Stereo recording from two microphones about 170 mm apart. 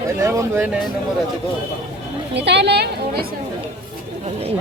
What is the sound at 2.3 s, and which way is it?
Speech, 85° right.